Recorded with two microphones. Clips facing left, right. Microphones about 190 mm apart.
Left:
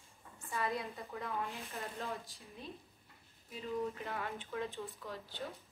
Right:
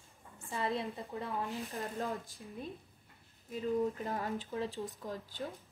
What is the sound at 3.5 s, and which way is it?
Speech, 40° right (ahead or behind).